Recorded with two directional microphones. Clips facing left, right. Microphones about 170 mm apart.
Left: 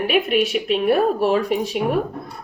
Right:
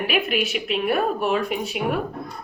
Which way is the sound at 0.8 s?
35° left (ahead or behind).